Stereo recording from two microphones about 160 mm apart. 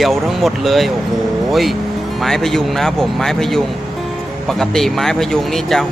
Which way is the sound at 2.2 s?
Centre (ahead or behind).